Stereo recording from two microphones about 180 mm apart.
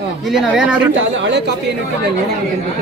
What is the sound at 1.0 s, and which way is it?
Speech, 85° right.